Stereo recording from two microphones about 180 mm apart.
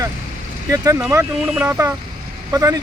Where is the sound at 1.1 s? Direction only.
15° right (ahead or behind).